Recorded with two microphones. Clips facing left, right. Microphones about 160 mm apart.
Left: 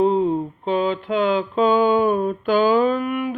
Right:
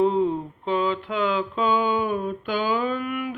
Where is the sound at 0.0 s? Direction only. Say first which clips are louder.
Left 3 dB; 25° left (ahead or behind).